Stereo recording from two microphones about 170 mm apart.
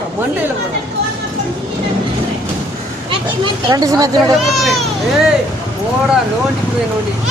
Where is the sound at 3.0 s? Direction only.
25° right (ahead or behind).